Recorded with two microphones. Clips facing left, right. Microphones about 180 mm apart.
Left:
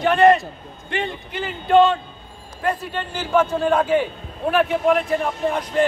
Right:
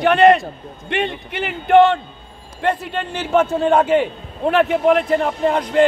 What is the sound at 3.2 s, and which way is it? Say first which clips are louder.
Speech: right 2 dB; 25° right (ahead or behind).